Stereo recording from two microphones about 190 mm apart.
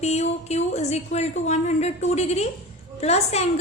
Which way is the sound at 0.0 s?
35° left (ahead or behind).